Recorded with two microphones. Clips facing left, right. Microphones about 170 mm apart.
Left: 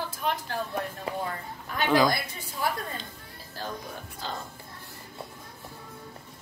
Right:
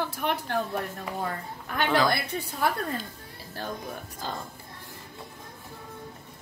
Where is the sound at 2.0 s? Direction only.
65° right (ahead or behind).